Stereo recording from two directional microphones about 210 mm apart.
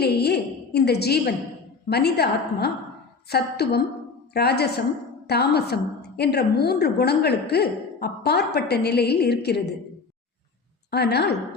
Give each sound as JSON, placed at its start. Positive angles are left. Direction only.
{"t": 0.0, "sound": "a woman's voice", "side_deg": 50}
{"t": 10.9, "sound": "a woman's voice", "side_deg": 50}